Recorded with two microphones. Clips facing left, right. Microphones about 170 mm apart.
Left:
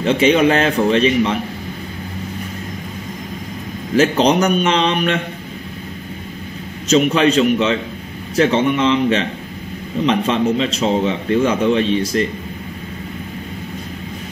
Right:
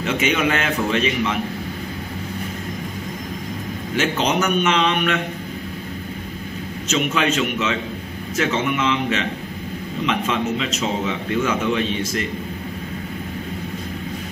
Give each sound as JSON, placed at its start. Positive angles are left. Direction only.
{"t": 0.0, "sound": "a man's voice", "side_deg": 30}
{"t": 3.9, "sound": "a man's voice", "side_deg": 35}
{"t": 6.9, "sound": "a man's voice", "side_deg": 35}